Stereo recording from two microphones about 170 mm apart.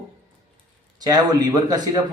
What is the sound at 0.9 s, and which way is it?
A man's voice, 25° right (ahead or behind).